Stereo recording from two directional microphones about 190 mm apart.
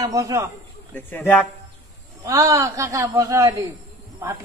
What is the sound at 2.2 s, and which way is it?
Speech, 15° right (ahead or behind).